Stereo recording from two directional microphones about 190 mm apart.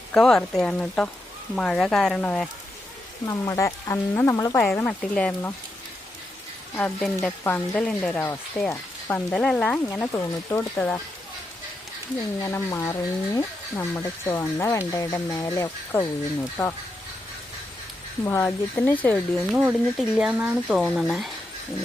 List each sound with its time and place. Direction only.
0.1 s speech: 5° left (ahead or behind)
3.2 s speech: 15° left (ahead or behind)
4.6 s speech: 5° left (ahead or behind)
6.7 s speech: 10° left (ahead or behind)
12.4 s speech: 15° left (ahead or behind)
18.3 s speech: 10° left (ahead or behind)
19.5 s speech: 5° right (ahead or behind)